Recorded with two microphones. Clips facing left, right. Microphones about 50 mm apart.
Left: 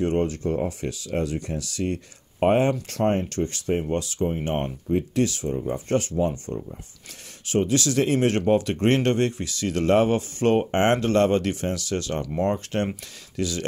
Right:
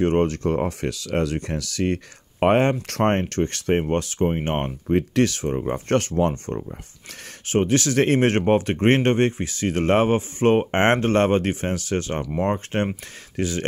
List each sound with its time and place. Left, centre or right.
0.0 s speech: right
4.8 s speech: right